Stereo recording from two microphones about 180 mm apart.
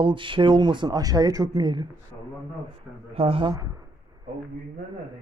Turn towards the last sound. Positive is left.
turn(degrees=-30)  # may be behind; listen again after turning